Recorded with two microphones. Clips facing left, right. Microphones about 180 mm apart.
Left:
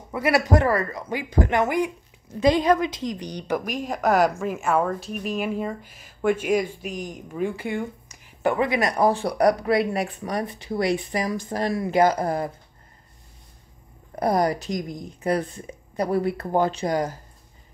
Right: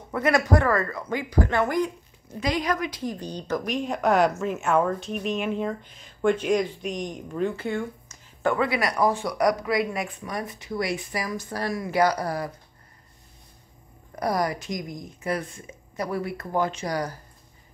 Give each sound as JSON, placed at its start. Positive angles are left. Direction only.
{"t": 0.1, "sound": "a woman's voice", "side_deg": 10}
{"t": 2.4, "sound": "a woman's voice", "side_deg": 30}
{"t": 14.2, "sound": "a woman's voice", "side_deg": 30}